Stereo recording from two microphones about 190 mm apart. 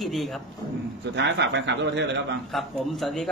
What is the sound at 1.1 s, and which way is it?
A man's voice, 70° right (ahead or behind).